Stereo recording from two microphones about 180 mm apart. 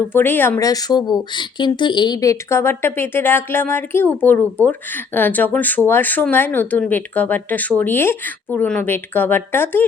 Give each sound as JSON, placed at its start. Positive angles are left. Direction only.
{"t": 0.1, "sound": "speech", "side_deg": 10}